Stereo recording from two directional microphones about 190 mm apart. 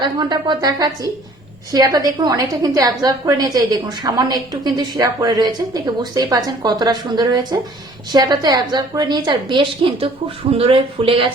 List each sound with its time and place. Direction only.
0.0 s a woman's voice: 25° right (ahead or behind)